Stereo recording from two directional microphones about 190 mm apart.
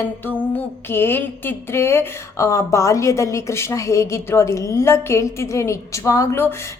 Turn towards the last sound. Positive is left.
turn(degrees=15)  # may be behind; listen again after turning